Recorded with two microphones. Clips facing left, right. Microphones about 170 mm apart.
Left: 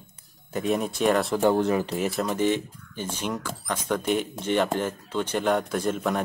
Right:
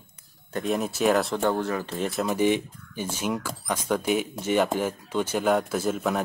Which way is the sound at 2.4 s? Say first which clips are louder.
Right 3 dB; 10° right (ahead or behind).